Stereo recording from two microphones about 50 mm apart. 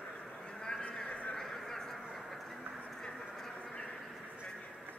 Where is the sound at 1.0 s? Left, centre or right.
Left.